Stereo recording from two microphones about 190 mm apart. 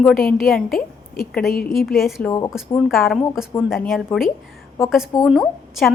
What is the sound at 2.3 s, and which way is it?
Speech, 20° left (ahead or behind).